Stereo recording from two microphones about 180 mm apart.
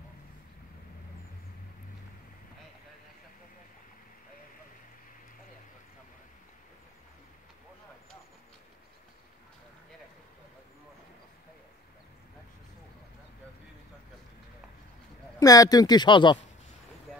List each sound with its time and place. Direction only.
15.3 s speech: 20° left (ahead or behind)